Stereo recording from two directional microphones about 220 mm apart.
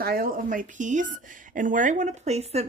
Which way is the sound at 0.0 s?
40° right (ahead or behind).